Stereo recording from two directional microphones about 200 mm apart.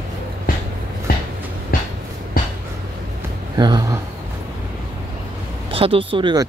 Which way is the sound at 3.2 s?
20° right (ahead or behind).